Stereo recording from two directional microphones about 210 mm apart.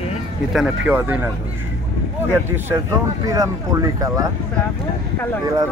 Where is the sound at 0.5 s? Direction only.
5° right (ahead or behind).